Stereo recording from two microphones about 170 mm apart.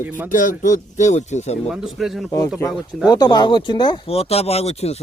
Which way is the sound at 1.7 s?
Centre (ahead or behind).